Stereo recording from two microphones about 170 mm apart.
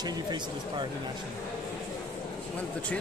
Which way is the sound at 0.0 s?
25° right (ahead or behind).